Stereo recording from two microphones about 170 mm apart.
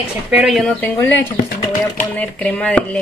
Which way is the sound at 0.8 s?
10° left (ahead or behind).